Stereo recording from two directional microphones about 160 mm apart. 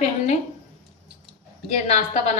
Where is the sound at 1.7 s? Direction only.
45° left (ahead or behind).